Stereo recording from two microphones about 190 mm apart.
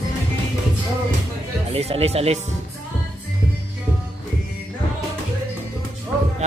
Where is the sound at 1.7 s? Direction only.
30° right (ahead or behind).